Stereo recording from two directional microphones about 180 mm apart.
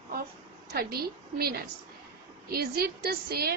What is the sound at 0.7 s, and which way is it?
A woman's voice, 60° right (ahead or behind).